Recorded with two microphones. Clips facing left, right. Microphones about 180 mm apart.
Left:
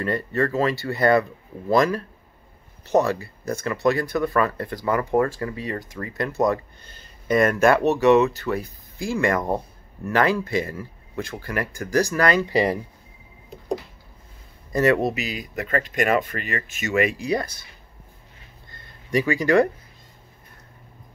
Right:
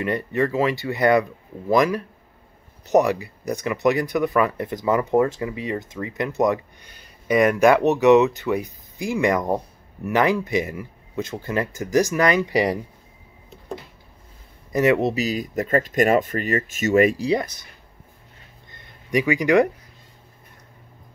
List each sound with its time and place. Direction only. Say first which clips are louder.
0.0 s speech: right 1 dB; 15° right (ahead or behind)
14.7 s speech: right 1 dB; 20° right (ahead or behind)
15.1 s speech: right 6 dB; 45° right (ahead or behind)
18.7 s a sound: right 1 dB; 20° right (ahead or behind)